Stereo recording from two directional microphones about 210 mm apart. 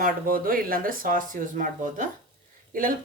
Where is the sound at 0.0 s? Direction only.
40° right (ahead or behind).